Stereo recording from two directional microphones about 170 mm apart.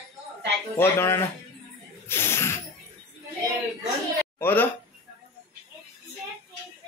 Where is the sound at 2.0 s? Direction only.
15° left (ahead or behind).